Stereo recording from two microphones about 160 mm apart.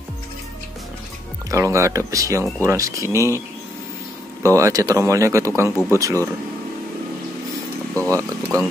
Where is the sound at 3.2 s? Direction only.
20° left (ahead or behind).